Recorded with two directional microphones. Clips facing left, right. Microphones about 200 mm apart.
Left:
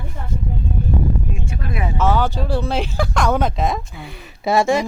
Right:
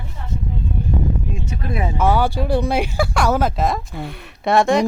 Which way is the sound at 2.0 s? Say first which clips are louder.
Right 1 dB; 10° right (ahead or behind).